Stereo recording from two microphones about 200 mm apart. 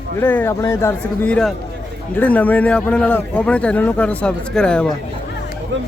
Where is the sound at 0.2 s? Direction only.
10° left (ahead or behind).